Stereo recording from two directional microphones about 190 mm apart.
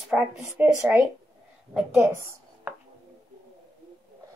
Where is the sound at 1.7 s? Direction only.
10° right (ahead or behind).